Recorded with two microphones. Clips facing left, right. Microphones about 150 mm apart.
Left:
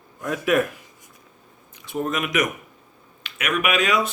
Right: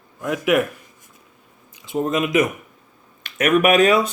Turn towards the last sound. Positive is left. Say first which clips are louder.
# right 7 dB
turn(degrees=-35)  # may be behind; listen again after turning